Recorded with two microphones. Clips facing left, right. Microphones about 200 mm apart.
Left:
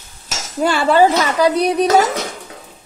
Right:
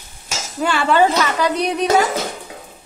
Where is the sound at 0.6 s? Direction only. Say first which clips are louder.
Left 3 dB; 35° left (ahead or behind).